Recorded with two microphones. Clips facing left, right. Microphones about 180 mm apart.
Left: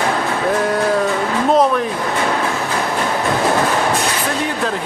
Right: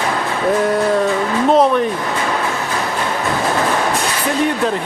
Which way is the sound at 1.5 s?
Centre (ahead or behind).